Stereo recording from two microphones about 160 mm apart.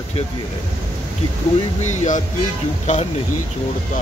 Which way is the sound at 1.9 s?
50° left (ahead or behind).